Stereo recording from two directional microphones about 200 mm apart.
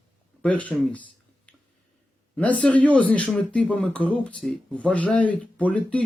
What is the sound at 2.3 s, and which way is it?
Speech, 5° left (ahead or behind).